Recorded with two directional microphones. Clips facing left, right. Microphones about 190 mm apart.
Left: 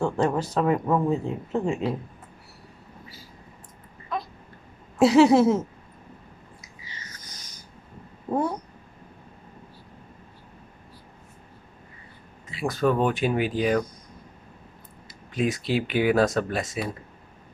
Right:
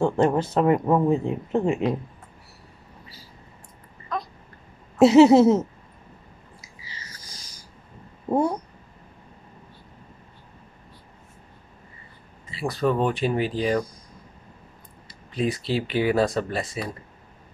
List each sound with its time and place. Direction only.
0.0 s speech: 20° right (ahead or behind)
4.9 s speech: 20° right (ahead or behind)
6.6 s a sound: 30° right (ahead or behind)
8.3 s speech: 25° right (ahead or behind)
12.4 s speech: centre (ahead or behind)
15.3 s speech: centre (ahead or behind)